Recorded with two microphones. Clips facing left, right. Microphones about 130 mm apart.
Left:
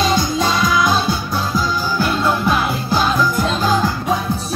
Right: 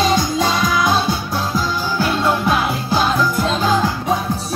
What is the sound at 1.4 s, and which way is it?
Music, 25° right (ahead or behind).